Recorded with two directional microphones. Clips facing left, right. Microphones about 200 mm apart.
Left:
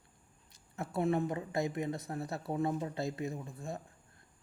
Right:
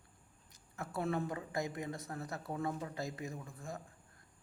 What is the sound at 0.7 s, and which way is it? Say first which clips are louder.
Speech: left 5 dB; 25° left (ahead or behind).